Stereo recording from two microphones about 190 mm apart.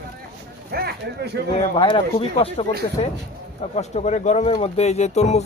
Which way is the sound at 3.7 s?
35° left (ahead or behind).